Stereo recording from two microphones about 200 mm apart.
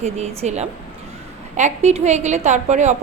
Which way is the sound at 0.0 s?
35° right (ahead or behind).